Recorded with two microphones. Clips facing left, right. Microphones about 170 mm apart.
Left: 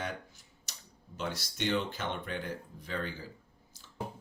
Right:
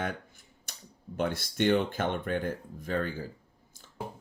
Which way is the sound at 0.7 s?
55° right (ahead or behind).